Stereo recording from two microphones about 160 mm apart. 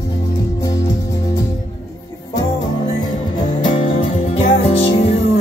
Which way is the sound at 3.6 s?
35° left (ahead or behind).